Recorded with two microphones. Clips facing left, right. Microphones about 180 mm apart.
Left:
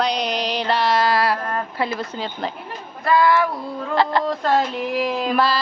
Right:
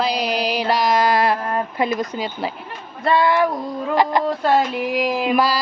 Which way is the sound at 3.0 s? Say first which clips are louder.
Even; 25° right (ahead or behind).